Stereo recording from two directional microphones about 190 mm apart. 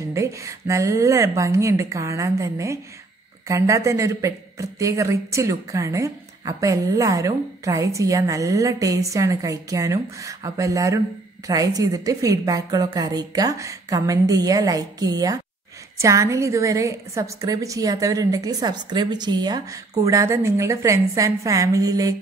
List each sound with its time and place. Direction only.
0.1 s a woman's voice: 15° right (ahead or behind)